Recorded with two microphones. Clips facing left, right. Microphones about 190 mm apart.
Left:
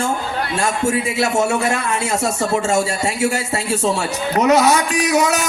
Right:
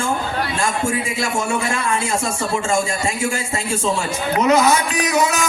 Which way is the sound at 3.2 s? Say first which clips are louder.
Left 3 dB; 65° left (ahead or behind).